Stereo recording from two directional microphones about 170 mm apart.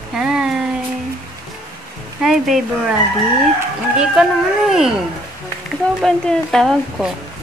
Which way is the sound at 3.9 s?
5° right (ahead or behind).